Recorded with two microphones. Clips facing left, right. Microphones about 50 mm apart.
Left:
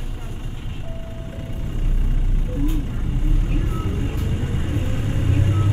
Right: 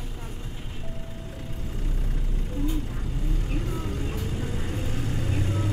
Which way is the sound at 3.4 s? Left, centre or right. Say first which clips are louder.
Left 3 dB; left.